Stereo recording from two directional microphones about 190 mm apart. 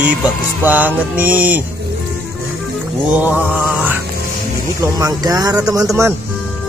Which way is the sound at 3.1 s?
5° right (ahead or behind).